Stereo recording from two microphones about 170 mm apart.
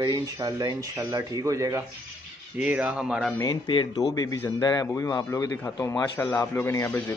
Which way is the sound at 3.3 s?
25° left (ahead or behind).